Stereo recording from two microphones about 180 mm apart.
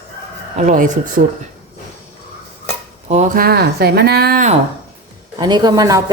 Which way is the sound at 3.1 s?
45° right (ahead or behind).